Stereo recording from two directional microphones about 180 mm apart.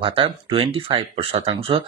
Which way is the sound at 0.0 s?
30° right (ahead or behind).